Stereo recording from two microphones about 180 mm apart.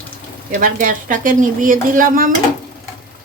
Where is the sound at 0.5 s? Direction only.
50° right (ahead or behind).